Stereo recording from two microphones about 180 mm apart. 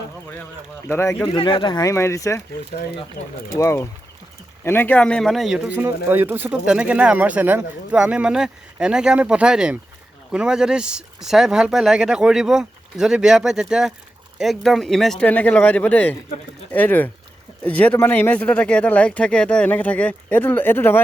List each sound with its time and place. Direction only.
0.9 s speech: 10° left (ahead or behind)
1.4 s speech: 25° left (ahead or behind)
3.5 s speech: 15° left (ahead or behind)